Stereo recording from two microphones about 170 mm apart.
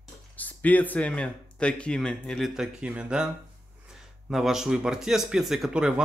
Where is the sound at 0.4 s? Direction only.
10° left (ahead or behind); by 3.3 s 5° right (ahead or behind).